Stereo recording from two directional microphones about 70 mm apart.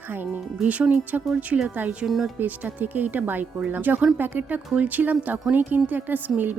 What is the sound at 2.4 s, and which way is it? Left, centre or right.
Speech, right.